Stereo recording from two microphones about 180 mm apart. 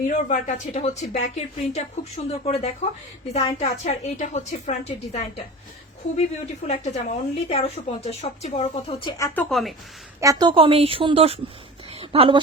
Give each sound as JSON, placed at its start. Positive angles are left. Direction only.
{"t": 0.0, "sound": "speech", "side_deg": 40}
{"t": 6.7, "sound": "speech", "side_deg": 35}
{"t": 9.5, "sound": "speech", "side_deg": 0}
{"t": 10.2, "sound": "a woman's voice", "side_deg": -20}
{"t": 11.9, "sound": "a sound", "side_deg": -30}